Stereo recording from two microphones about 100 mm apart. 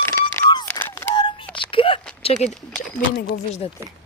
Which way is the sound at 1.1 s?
50° left (ahead or behind).